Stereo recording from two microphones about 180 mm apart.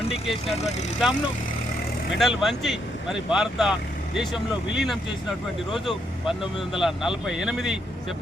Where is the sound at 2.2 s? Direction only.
Centre (ahead or behind).